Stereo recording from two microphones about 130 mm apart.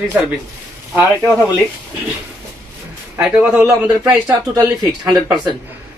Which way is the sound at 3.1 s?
5° right (ahead or behind).